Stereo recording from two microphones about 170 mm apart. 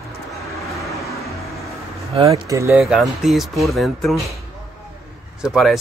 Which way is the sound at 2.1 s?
25° right (ahead or behind).